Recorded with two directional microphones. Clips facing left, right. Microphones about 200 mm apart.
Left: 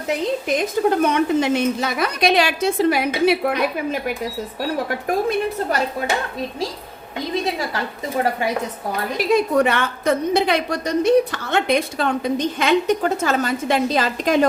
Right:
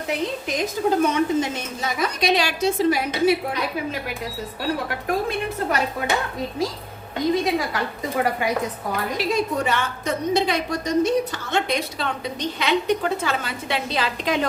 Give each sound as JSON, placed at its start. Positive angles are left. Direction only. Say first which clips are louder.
{"t": 0.4, "sound": "a woman's voice", "louder": "left 4 dB", "side_deg": 65}
{"t": 9.3, "sound": "a woman's voice", "louder": "left 8 dB", "side_deg": 60}